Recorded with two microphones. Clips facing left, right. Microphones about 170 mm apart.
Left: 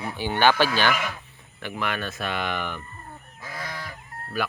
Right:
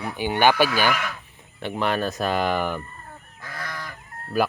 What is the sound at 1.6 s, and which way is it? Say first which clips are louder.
Speech: right 5 dB; 30° right (ahead or behind).